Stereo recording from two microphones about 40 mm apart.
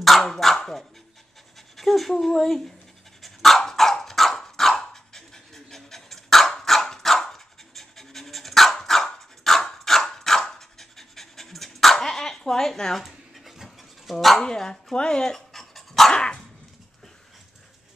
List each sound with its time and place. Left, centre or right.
0.2 s speech: centre
1.8 s speech: centre
3.2 s dog: centre
13.0 s dog: centre
14.4 s speech: centre
15.3 s dog: centre
16.1 s dog: centre